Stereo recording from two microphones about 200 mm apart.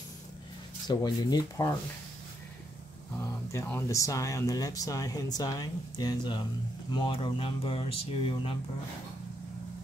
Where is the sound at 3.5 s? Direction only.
15° left (ahead or behind).